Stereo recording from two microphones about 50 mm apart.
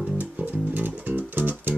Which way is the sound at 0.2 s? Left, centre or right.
Right.